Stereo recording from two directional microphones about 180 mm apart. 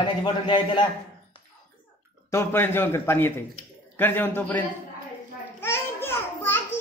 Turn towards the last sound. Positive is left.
turn(degrees=10)  # may be behind; listen again after turning